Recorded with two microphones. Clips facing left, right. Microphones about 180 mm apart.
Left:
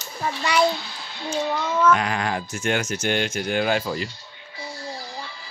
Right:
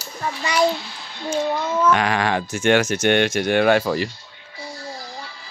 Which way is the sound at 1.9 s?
80° right.